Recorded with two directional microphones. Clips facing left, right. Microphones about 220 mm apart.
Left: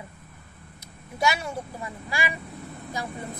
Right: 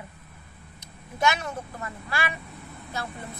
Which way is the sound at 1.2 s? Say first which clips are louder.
Even; 10° left (ahead or behind).